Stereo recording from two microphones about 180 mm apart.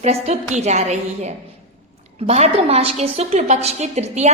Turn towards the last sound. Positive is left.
turn(degrees=-40)  # may be behind; listen again after turning